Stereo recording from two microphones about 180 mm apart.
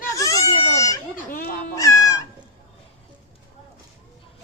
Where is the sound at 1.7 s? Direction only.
20° left (ahead or behind).